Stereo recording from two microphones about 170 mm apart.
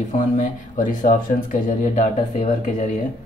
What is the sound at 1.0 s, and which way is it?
Speech, 50° left (ahead or behind).